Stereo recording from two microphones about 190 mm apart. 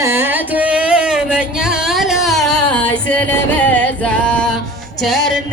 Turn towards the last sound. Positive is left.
turn(degrees=0)  # may be behind; listen again after turning